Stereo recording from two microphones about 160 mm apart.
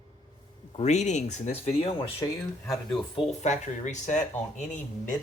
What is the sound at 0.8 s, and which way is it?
Speech, 45° left (ahead or behind).